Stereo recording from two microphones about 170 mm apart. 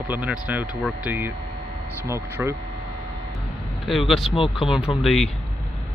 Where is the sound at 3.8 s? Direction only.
Centre (ahead or behind).